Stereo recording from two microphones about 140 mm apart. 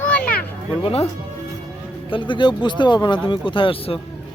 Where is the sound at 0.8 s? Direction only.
45° left (ahead or behind).